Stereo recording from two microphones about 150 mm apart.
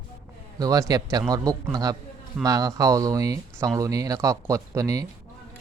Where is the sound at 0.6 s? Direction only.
25° right (ahead or behind).